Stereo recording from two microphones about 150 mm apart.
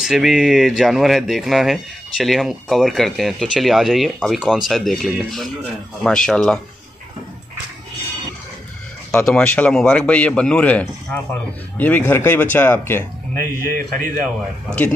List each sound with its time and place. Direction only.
0.0 s speech: centre (ahead or behind)
9.1 s speech: 5° left (ahead or behind)
13.7 s a man's voice: 75° right (ahead or behind)